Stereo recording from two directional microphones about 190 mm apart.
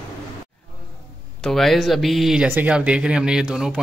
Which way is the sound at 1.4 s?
Centre (ahead or behind).